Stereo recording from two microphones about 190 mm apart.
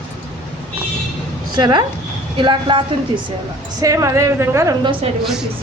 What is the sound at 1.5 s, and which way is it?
A woman's voice, 25° right (ahead or behind).